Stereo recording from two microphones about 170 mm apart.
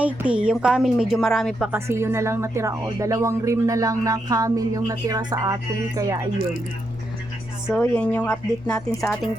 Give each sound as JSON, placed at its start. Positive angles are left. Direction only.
{"t": 0.0, "sound": "a woman's voice", "side_deg": -10}
{"t": 7.8, "sound": "a woman's voice", "side_deg": 10}